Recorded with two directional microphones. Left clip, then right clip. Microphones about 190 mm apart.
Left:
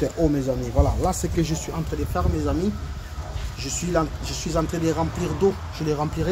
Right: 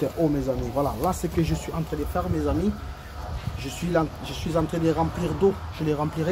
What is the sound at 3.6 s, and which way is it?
Speech, 5° right (ahead or behind).